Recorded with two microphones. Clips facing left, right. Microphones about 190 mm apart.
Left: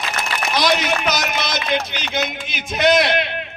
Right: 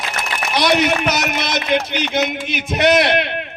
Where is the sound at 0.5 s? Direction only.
65° right (ahead or behind).